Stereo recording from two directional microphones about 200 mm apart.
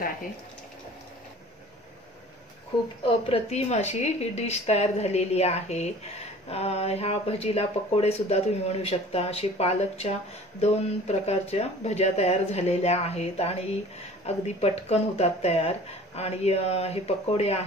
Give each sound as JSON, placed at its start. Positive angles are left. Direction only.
{"t": 3.0, "sound": "speech", "side_deg": 25}